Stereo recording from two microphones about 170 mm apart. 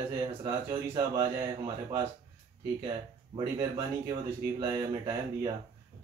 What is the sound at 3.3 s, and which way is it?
Speech, 30° right (ahead or behind).